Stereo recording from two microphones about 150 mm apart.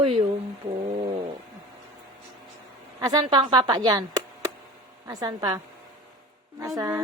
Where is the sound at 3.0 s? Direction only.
25° right (ahead or behind).